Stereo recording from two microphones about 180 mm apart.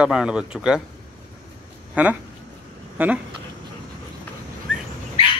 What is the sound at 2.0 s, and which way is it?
Speech, 5° right (ahead or behind).